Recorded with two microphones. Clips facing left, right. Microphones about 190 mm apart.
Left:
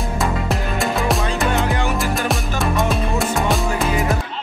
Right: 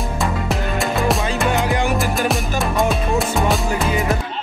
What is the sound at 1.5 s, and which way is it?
Music, 15° right (ahead or behind).